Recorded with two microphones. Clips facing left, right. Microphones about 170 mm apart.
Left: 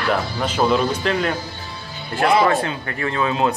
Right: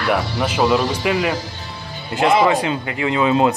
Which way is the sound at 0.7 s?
90° right.